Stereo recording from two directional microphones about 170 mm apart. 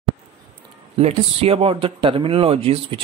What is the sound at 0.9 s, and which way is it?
Speech, 35° right (ahead or behind).